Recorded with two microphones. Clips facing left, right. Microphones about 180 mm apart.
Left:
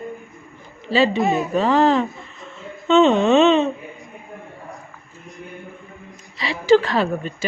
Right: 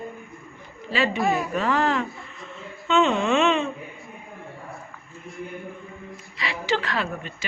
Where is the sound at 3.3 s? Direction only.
35° left (ahead or behind).